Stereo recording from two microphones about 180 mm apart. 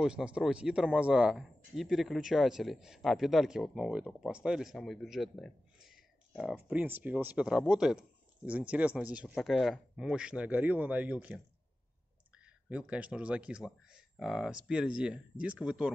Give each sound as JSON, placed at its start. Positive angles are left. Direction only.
{"t": 0.0, "sound": "speech", "side_deg": -5}
{"t": 12.4, "sound": "speech", "side_deg": -5}